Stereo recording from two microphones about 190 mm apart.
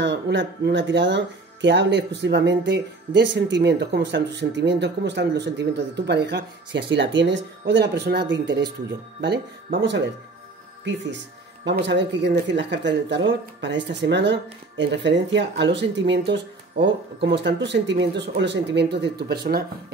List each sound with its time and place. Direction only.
0.0 s speech: 70° right (ahead or behind)
11.6 s speech: 65° right (ahead or behind)